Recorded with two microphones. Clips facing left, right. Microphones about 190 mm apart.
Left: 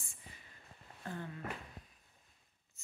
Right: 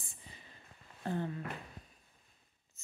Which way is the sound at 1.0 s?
30° right (ahead or behind).